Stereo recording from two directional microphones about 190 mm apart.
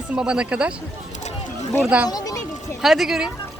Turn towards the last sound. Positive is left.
turn(degrees=0)  # may be behind; listen again after turning